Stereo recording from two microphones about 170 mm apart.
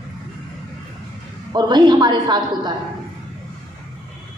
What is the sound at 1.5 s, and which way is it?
A woman's voice, 25° right (ahead or behind).